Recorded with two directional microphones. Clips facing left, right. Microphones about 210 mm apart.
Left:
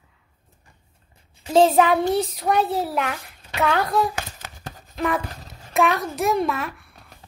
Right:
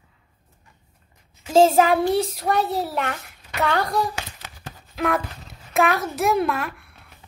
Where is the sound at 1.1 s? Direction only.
30° left (ahead or behind).